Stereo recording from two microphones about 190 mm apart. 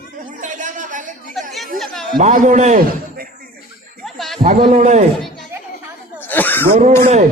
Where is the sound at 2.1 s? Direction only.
45° right (ahead or behind).